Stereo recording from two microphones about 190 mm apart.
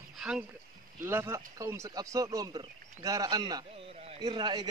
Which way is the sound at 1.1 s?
15° right (ahead or behind).